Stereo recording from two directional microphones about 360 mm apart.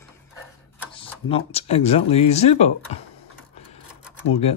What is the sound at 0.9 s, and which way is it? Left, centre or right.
Speech, centre.